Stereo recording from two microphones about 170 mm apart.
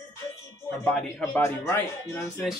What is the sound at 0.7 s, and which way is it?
Speech, 5° left (ahead or behind).